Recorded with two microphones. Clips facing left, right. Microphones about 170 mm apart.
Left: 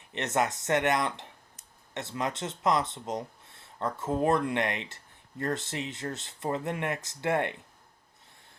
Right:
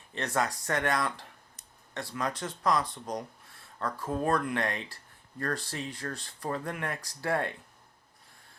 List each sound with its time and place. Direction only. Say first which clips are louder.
0.1 s speech: left 2 dB; 20° left (ahead or behind)